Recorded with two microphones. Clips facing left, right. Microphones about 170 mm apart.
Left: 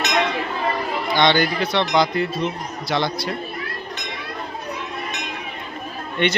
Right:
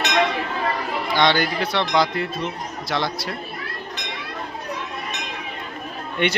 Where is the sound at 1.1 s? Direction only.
5° right (ahead or behind).